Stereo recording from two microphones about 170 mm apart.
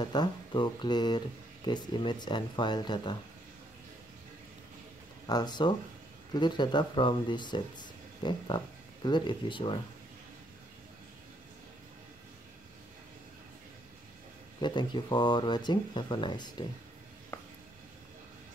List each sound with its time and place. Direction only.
0.0 s speech: 25° left (ahead or behind)
5.2 s speech: 25° left (ahead or behind)
14.6 s speech: 25° left (ahead or behind)
17.3 s a sound: 15° left (ahead or behind)